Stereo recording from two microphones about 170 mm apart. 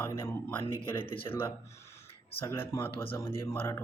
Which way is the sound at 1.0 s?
30° left (ahead or behind).